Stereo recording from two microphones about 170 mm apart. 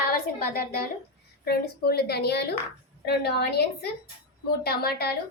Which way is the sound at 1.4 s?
65° left (ahead or behind).